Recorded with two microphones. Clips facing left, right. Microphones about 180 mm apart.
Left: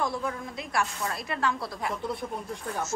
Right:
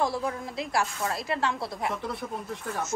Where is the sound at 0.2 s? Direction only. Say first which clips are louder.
Right 2 dB; 25° right (ahead or behind).